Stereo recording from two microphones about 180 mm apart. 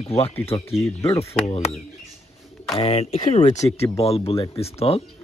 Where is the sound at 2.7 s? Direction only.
35° left (ahead or behind).